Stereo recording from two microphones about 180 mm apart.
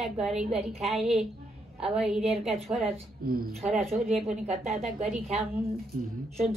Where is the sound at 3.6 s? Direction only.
Centre (ahead or behind).